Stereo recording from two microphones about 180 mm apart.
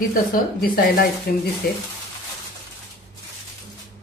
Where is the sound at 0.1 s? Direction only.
55° left (ahead or behind).